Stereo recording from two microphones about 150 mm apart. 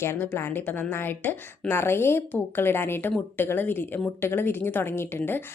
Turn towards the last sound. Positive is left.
turn(degrees=15)  # may be behind; listen again after turning